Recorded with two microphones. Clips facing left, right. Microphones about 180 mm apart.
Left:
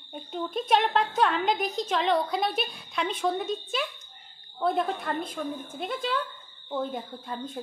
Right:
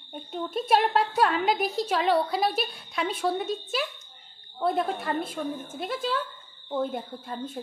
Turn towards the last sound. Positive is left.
turn(degrees=-5)  # may be behind; listen again after turning